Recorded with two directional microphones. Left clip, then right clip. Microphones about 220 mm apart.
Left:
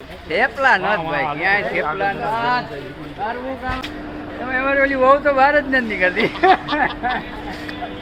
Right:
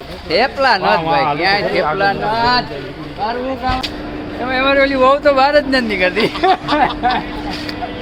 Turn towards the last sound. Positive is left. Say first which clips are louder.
# right 5 dB
turn(degrees=0)  # may be behind; listen again after turning